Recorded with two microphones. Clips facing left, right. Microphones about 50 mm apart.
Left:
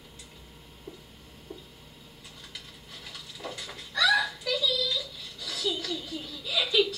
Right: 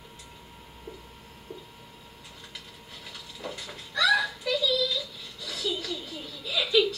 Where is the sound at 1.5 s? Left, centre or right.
Right.